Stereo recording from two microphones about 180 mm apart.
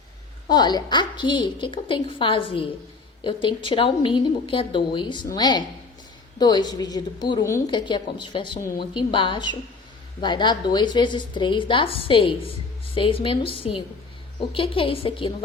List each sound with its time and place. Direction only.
0.4 s a woman's voice: 25° left (ahead or behind)